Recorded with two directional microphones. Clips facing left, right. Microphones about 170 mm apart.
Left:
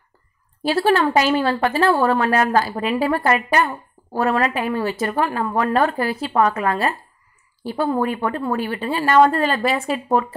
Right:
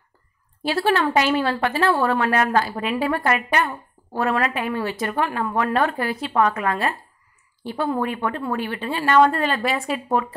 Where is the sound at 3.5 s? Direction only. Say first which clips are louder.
Left 3 dB; 35° left (ahead or behind).